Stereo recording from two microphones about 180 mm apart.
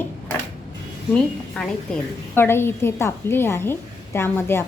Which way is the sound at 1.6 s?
5° left (ahead or behind).